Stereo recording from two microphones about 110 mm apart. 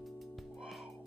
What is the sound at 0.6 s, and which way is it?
Music, centre (ahead or behind).